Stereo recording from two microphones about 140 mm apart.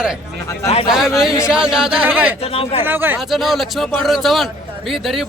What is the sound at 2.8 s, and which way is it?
Speech, 15° right (ahead or behind).